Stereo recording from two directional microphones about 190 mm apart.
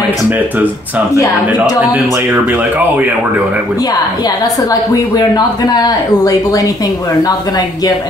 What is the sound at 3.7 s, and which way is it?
A woman's voice, 20° left (ahead or behind).